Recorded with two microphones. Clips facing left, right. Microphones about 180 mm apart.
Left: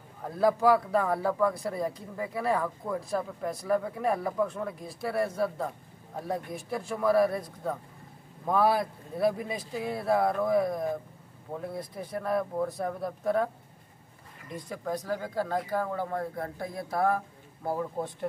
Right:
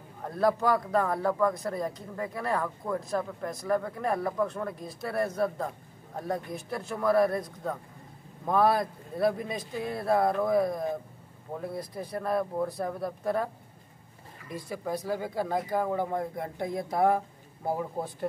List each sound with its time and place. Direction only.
0.4 s a man's voice: 5° left (ahead or behind)
8.5 s a man's voice: centre (ahead or behind)
14.5 s a man's voice: 5° right (ahead or behind)